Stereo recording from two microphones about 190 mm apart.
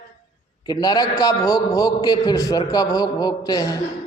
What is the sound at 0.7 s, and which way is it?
A man's voice, 20° left (ahead or behind).